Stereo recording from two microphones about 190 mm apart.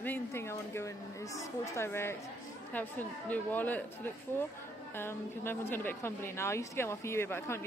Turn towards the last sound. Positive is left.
turn(degrees=15)  # may be behind; listen again after turning